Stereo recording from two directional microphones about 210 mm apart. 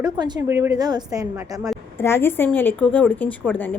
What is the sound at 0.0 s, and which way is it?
A woman's voice, 20° right (ahead or behind).